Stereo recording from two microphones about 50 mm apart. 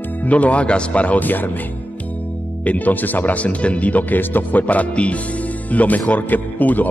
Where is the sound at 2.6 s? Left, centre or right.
Left.